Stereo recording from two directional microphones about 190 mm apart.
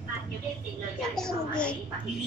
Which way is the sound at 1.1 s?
5° left (ahead or behind).